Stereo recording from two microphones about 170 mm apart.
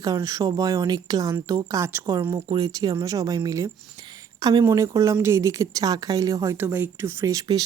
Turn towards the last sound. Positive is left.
turn(degrees=-20)  # may be behind; listen again after turning